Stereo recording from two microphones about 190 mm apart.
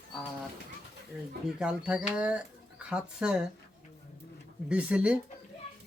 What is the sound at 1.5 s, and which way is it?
Speech, 5° right (ahead or behind).